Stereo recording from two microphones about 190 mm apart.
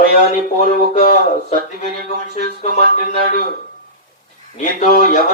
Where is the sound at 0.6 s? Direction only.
40° left (ahead or behind).